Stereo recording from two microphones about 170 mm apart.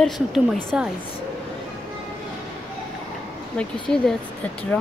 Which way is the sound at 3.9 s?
5° left (ahead or behind).